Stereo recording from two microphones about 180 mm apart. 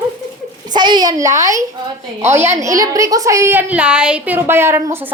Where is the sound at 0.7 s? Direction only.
25° right (ahead or behind).